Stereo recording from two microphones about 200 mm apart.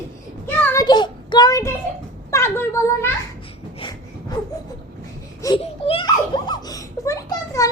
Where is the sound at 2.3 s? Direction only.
15° left (ahead or behind).